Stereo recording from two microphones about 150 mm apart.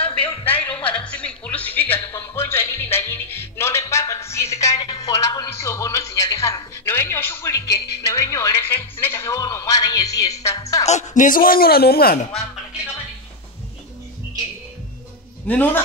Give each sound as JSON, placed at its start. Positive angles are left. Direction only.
{"t": 0.0, "sound": "music", "side_deg": 40}
{"t": 0.5, "sound": "music", "side_deg": 10}
{"t": 4.5, "sound": "music", "side_deg": 30}
{"t": 8.1, "sound": "speech", "side_deg": 20}
{"t": 10.9, "sound": "speech", "side_deg": 55}
{"t": 15.4, "sound": "a man's voice", "side_deg": 10}